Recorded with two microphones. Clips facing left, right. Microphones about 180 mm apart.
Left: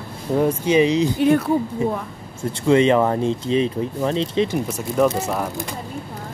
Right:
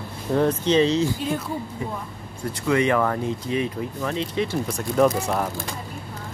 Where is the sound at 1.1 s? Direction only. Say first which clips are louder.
Left 10 dB; 65° left (ahead or behind).